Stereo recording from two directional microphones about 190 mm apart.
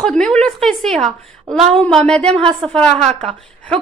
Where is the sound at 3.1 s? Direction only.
35° right (ahead or behind).